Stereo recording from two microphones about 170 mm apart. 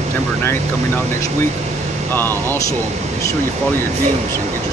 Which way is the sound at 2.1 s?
10° left (ahead or behind).